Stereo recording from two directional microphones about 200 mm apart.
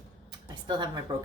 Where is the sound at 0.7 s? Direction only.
20° right (ahead or behind).